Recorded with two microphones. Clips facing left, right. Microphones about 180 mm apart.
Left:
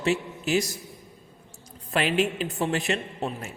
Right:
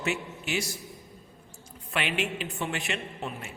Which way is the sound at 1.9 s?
35° left (ahead or behind).